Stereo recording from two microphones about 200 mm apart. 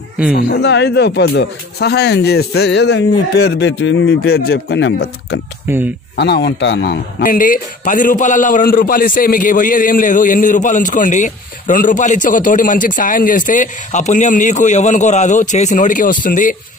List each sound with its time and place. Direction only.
0.3 s a man's voice: 50° left (ahead or behind)